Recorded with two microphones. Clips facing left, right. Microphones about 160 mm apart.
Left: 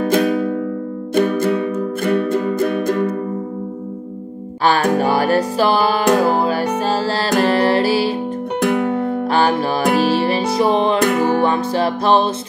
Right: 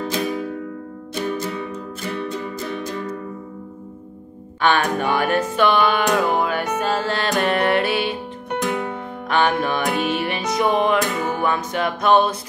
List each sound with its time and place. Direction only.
0.0 s music: 60° left (ahead or behind)
4.6 s music: 35° left (ahead or behind)
8.5 s music: 60° left (ahead or behind)
9.3 s music: 30° left (ahead or behind)
11.0 s music: 60° left (ahead or behind)
11.4 s music: 30° left (ahead or behind)